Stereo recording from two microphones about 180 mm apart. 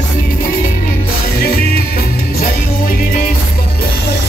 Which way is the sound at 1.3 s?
55° left (ahead or behind).